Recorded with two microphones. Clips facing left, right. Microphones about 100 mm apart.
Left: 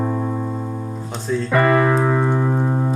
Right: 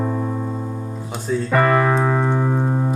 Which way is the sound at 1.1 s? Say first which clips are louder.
Even; 5° right (ahead or behind).